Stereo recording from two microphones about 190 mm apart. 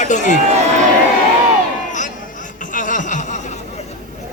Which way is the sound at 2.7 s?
45° left (ahead or behind).